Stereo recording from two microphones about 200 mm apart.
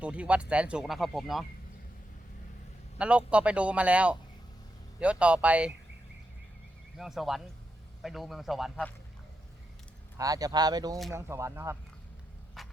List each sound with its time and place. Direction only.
0.0 s speech: 5° right (ahead or behind)
3.0 s speech: 5° right (ahead or behind)
6.9 s speech: centre (ahead or behind)
10.2 s speech: 20° right (ahead or behind)
12.6 s a sound: centre (ahead or behind)